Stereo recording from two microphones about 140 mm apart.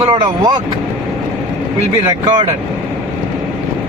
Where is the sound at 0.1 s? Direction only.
40° right (ahead or behind).